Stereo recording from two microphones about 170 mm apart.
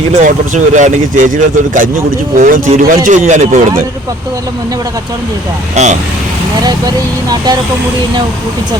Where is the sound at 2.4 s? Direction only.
45° right (ahead or behind).